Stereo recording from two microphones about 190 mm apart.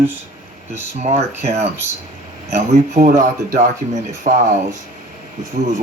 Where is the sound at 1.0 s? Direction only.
35° right (ahead or behind).